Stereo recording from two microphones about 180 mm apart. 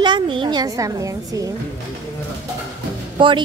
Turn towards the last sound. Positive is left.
turn(degrees=-25)  # may be behind; listen again after turning